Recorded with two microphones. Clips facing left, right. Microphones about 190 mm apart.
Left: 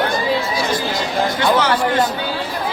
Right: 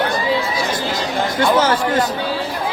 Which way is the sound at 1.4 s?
45° right (ahead or behind).